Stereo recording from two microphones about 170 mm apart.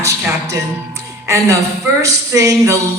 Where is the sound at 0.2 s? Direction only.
15° right (ahead or behind).